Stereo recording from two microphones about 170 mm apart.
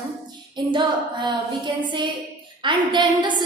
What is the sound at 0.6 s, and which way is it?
A woman's voice, 25° right (ahead or behind).